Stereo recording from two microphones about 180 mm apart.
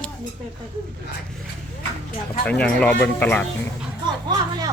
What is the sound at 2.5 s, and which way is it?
Speech, 5° left (ahead or behind).